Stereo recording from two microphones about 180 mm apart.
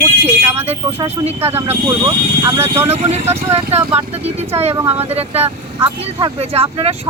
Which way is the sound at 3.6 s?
35° right (ahead or behind).